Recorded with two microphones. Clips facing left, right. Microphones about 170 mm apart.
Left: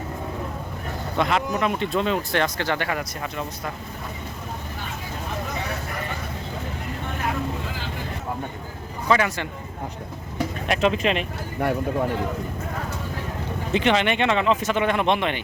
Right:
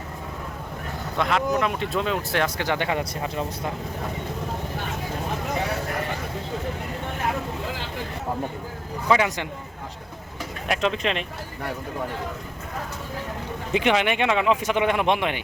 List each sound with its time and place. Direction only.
1.2 s speech: centre (ahead or behind); by 3.4 s 20° right (ahead or behind)
9.0 s speech: 15° right (ahead or behind)
10.7 s speech: 5° left (ahead or behind)
13.7 s speech: 10° right (ahead or behind)